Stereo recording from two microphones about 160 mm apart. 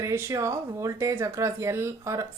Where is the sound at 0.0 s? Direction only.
15° right (ahead or behind).